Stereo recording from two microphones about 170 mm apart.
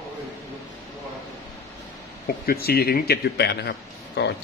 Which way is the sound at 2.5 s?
65° left (ahead or behind).